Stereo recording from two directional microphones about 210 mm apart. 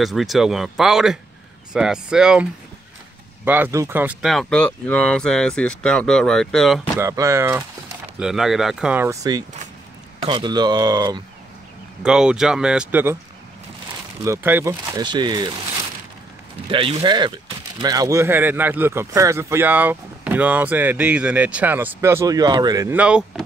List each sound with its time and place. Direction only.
0.0 s speech: centre (ahead or behind)
3.4 s speech: 10° right (ahead or behind)
7.0 s speech: 15° right (ahead or behind)
8.2 s speech: centre (ahead or behind); by 11.2 s 20° right (ahead or behind)
12.0 s speech: 5° right (ahead or behind)
14.2 s speech: 10° right (ahead or behind)
16.7 s speech: 25° right (ahead or behind); by 23.4 s 5° right (ahead or behind)